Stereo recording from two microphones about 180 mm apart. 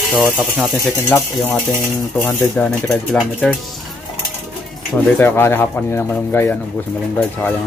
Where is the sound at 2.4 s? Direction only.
Centre (ahead or behind).